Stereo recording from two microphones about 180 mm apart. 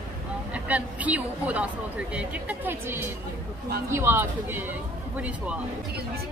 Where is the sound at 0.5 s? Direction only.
10° right (ahead or behind).